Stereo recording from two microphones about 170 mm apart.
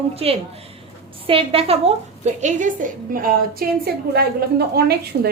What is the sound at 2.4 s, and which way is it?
A woman's voice, 50° right (ahead or behind).